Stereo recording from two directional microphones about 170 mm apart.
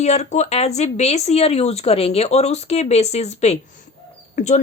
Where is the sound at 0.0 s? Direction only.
40° left (ahead or behind).